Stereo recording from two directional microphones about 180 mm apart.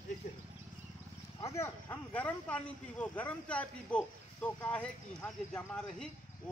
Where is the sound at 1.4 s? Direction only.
15° left (ahead or behind).